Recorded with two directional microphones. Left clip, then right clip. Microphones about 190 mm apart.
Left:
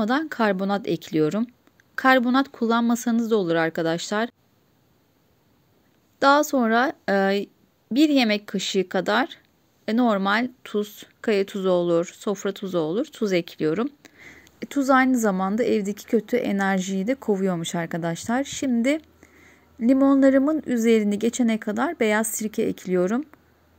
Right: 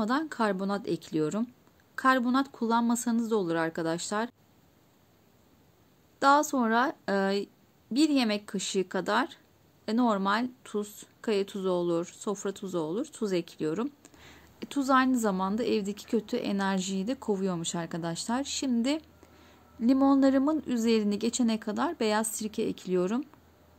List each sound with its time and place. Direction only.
0.0 s speech: 15° left (ahead or behind)
6.1 s speech: 15° left (ahead or behind)